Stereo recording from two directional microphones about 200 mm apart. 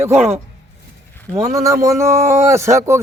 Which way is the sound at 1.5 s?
15° right (ahead or behind).